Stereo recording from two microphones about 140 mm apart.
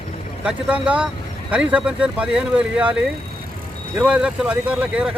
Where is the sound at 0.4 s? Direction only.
10° right (ahead or behind).